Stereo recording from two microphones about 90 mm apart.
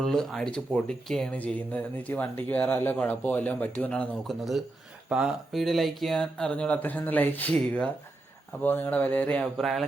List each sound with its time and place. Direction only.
0.0 s speech: 5° left (ahead or behind)
1.4 s speech: 20° left (ahead or behind)
4.3 s speech: centre (ahead or behind)